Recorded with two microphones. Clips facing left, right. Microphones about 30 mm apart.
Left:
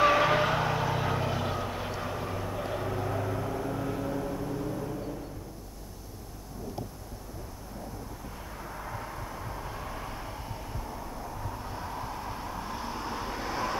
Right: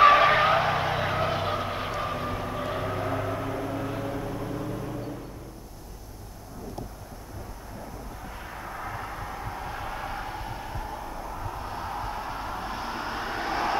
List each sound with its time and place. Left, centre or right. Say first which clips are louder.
0.0 s vehicle: right 6 dB; right
8.4 s vehicle: right 5 dB; right